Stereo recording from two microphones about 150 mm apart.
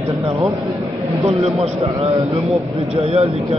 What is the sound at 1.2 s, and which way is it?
Speech, 45° right (ahead or behind).